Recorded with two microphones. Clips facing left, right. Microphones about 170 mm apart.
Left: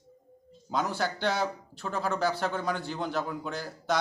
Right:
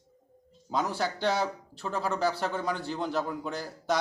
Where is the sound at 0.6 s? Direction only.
Centre (ahead or behind).